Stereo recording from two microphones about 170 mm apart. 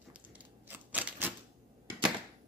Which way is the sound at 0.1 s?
10° right (ahead or behind).